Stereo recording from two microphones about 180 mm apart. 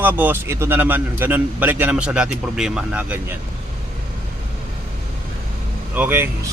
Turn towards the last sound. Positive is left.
turn(degrees=-10)  # may be behind; listen again after turning